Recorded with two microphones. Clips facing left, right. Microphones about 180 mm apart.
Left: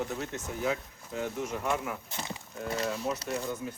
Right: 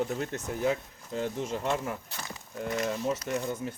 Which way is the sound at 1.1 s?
30° right (ahead or behind).